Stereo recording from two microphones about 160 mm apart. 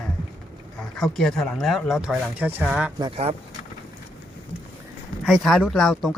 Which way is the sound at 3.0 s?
35° right (ahead or behind).